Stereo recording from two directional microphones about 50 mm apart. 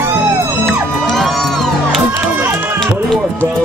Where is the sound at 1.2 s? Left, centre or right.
Centre.